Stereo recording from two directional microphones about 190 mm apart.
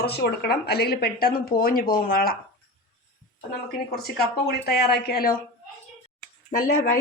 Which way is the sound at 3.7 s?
55° left (ahead or behind).